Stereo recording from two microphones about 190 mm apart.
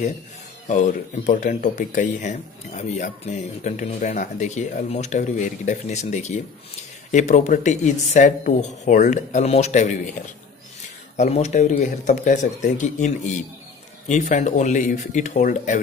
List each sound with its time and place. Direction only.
0.7 s speech: 40° left (ahead or behind)
11.1 s speech: 35° left (ahead or behind)